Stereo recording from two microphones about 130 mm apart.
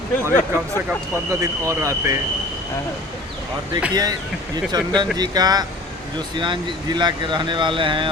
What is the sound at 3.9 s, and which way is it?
Speech, 30° right (ahead or behind).